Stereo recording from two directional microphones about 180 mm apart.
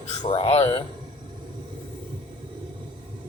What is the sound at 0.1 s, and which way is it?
Speech, 35° left (ahead or behind).